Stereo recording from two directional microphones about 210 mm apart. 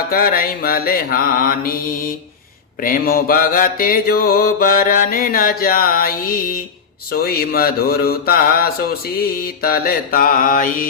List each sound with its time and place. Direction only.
0.1 s mantra: 45° left (ahead or behind)